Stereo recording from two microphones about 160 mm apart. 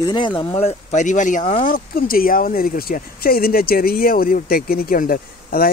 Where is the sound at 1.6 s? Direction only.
60° left (ahead or behind).